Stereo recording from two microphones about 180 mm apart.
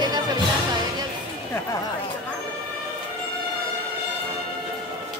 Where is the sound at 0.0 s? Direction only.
25° right (ahead or behind).